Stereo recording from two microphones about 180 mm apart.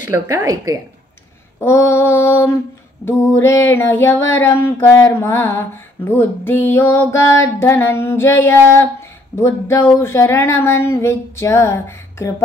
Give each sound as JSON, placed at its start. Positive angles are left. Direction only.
{"t": 0.1, "sound": "a woman's voice", "side_deg": -15}
{"t": 1.6, "sound": "speech", "side_deg": 15}